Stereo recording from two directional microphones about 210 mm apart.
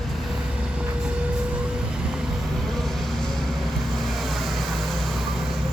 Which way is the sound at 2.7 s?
Centre (ahead or behind).